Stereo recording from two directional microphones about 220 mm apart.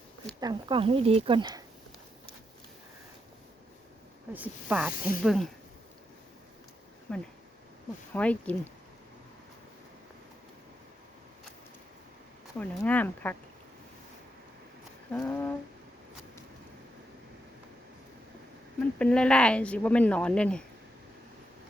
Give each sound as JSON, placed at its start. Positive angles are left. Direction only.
{"t": 0.3, "sound": "speech", "side_deg": -20}
{"t": 4.3, "sound": "speech", "side_deg": -5}
{"t": 7.1, "sound": "speech", "side_deg": 5}
{"t": 12.5, "sound": "speech", "side_deg": 5}
{"t": 15.3, "sound": "speech", "side_deg": 10}
{"t": 18.9, "sound": "speech", "side_deg": 5}